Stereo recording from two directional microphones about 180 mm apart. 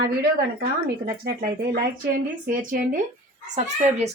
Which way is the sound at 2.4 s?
50° right (ahead or behind).